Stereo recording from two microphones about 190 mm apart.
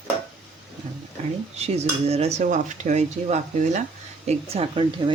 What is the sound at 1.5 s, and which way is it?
Cutlery, 35° right (ahead or behind).